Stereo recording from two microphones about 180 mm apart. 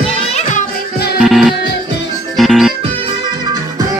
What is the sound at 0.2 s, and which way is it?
Music, 40° left (ahead or behind).